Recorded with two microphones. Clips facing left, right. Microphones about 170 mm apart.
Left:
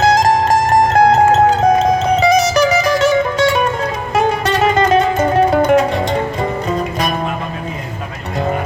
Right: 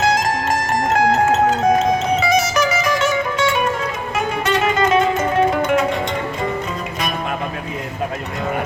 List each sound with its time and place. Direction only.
0.0 s music: 35° left (ahead or behind)